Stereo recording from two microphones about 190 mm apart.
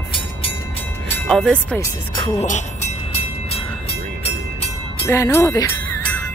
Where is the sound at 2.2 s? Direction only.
35° left (ahead or behind).